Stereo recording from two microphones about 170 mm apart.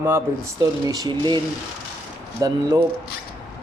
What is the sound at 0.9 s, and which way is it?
Speech, 25° right (ahead or behind).